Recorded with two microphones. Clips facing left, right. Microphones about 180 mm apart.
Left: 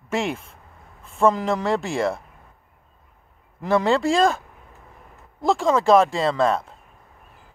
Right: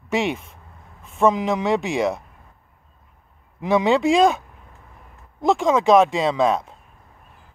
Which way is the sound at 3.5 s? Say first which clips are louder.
Right 1 dB; centre (ahead or behind).